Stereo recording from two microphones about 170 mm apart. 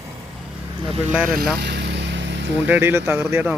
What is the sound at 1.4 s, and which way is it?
Vehicle, 75° right (ahead or behind).